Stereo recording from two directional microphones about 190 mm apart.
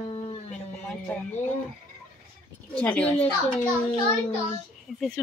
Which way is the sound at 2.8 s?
5° left (ahead or behind).